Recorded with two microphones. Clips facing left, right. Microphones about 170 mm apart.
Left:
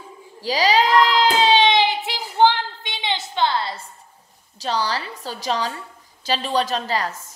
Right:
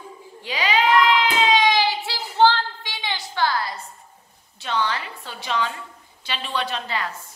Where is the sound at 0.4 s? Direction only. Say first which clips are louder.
Left 4 dB; 35° left (ahead or behind).